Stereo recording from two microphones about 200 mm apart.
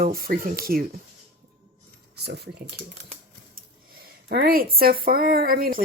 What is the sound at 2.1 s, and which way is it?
Speech, 55° right (ahead or behind).